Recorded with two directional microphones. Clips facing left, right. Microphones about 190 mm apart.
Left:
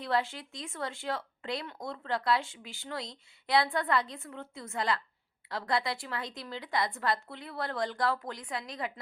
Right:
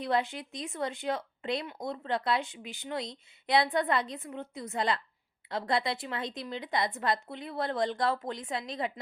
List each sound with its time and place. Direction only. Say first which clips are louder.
0.0 s speech: right 1 dB; 20° right (ahead or behind)